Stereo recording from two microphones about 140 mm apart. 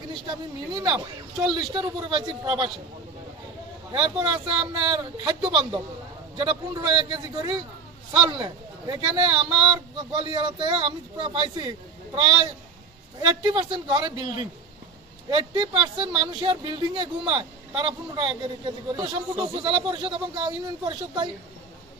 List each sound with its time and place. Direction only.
0.7 s speech: 35° right (ahead or behind)
3.9 s speech: 40° right (ahead or behind)